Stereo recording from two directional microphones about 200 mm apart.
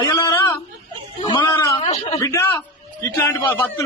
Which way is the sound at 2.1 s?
15° left (ahead or behind).